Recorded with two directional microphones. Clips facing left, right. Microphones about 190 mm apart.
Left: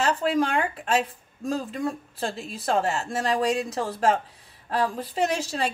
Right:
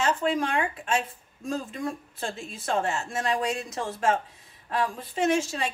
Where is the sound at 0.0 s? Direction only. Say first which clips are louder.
Left 2 dB; 35° left (ahead or behind).